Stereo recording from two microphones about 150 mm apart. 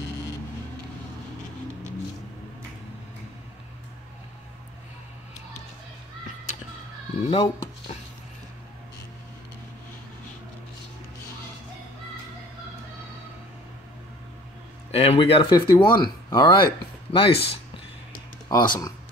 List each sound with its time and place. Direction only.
7.2 s a sound: 35° left (ahead or behind)
14.9 s speech: 40° left (ahead or behind)
18.5 s speech: 25° left (ahead or behind)